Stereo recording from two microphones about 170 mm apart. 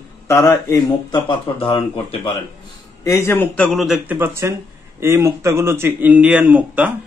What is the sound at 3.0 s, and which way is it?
Speech, 15° left (ahead or behind).